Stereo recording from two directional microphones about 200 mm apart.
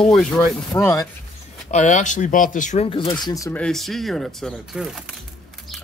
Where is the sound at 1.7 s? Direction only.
40° left (ahead or behind); by 3.6 s 15° left (ahead or behind).